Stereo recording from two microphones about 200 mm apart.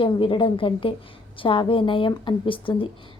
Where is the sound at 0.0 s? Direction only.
25° left (ahead or behind).